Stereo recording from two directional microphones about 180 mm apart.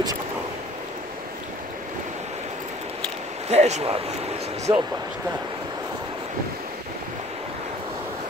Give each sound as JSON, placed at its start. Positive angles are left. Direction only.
{"t": 3.4, "sound": "speech", "side_deg": -40}
{"t": 4.7, "sound": "speech", "side_deg": -25}